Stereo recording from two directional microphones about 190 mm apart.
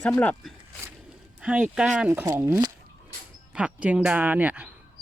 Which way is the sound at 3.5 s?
5° right (ahead or behind).